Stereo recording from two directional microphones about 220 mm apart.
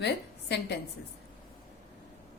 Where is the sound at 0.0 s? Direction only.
50° left (ahead or behind).